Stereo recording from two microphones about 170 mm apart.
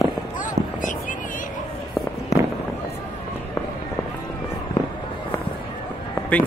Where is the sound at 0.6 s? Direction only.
85° right.